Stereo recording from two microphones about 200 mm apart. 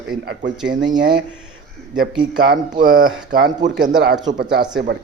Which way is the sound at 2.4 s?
45° right (ahead or behind).